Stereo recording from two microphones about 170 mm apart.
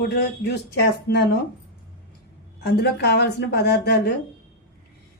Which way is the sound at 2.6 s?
70° left (ahead or behind).